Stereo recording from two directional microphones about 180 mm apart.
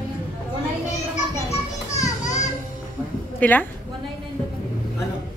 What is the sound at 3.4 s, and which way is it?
Speech, 10° left (ahead or behind).